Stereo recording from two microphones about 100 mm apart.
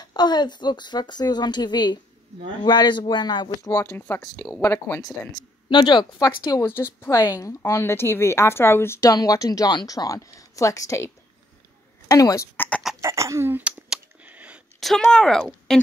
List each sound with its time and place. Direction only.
0.0 s a woman's voice: 45° left (ahead or behind)
3.6 s a woman's voice: 30° left (ahead or behind)
5.0 s a woman's voice: 40° left (ahead or behind)
6.6 s speech: 25° left (ahead or behind)
9.1 s a woman's voice: 35° left (ahead or behind)
12.1 s a woman's voice: 35° left (ahead or behind)
12.5 s speech: 15° left (ahead or behind)
13.0 s speech: 30° right (ahead or behind)
13.8 s a sound: 15° right (ahead or behind)
14.8 s speech: centre (ahead or behind)